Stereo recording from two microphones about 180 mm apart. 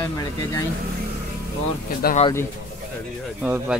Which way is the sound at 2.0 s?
60° left (ahead or behind).